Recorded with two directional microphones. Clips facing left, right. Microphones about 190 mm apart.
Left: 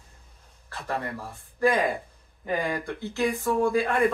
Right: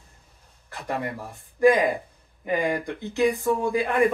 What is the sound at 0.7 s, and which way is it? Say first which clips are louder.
Speech: right 2 dB; 15° right (ahead or behind).